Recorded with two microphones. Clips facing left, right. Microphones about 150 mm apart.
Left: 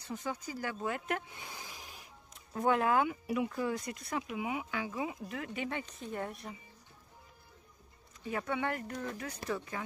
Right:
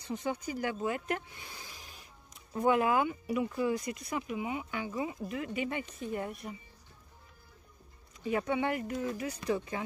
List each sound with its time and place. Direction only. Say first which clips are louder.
0.1 s speech: right 4 dB; 20° right (ahead or behind)
0.8 s speech: left 1 dB; 5° right (ahead or behind)
1.3 s a sound: left 2 dB; 20° left (ahead or behind)
2.5 s speech: right 2 dB; 5° right (ahead or behind)
5.3 s speech: right 3 dB; 5° right (ahead or behind)
8.3 s speech: right 4 dB; 20° right (ahead or behind)